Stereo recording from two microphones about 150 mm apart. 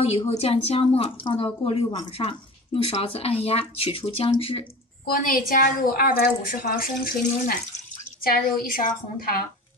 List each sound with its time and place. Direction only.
0.3 s speech: 40° left (ahead or behind)
5.0 s a woman's voice: 75° left (ahead or behind)